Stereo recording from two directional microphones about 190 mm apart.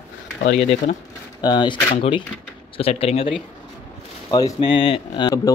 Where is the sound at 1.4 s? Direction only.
20° left (ahead or behind).